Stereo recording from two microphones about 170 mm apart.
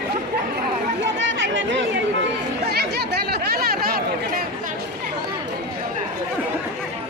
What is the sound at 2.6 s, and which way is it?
Chatter, 75° right (ahead or behind).